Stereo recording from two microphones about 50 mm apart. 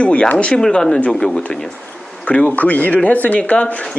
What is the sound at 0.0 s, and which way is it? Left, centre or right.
Speech, left.